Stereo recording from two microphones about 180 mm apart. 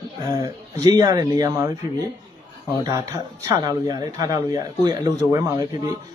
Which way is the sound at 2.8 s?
20° right (ahead or behind).